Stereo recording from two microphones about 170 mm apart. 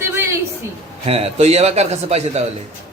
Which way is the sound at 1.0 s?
35° right (ahead or behind).